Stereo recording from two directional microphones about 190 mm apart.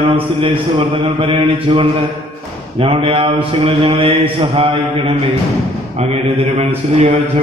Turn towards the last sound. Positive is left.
turn(degrees=-35)  # may be behind; listen again after turning